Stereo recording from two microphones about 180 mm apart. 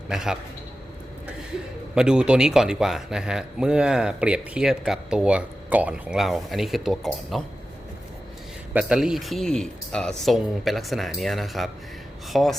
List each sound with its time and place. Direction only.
0.1 s a man's voice: 5° right (ahead or behind)
2.0 s a man's voice: 5° right (ahead or behind)
8.7 s a man's voice: 5° right (ahead or behind)